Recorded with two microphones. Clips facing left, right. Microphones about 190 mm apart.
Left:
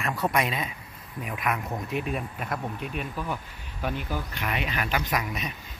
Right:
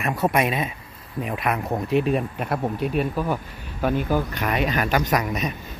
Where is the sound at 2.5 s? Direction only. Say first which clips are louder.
Right 9 dB; 40° right (ahead or behind).